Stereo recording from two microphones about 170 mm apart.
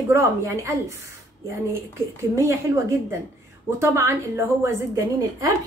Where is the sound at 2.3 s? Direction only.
15° right (ahead or behind).